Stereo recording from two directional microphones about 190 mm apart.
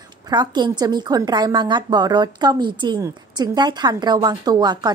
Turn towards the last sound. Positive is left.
turn(degrees=-20)  # may be behind; listen again after turning